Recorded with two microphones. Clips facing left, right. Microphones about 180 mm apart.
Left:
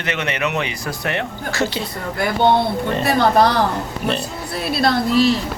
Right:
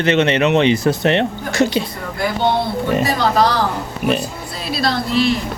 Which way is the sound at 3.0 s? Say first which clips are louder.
Left 1 dB; 60° left (ahead or behind).